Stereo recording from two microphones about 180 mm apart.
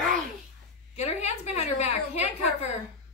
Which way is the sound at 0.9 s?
40° left (ahead or behind).